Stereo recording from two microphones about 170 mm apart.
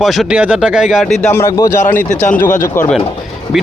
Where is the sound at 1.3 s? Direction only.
15° left (ahead or behind).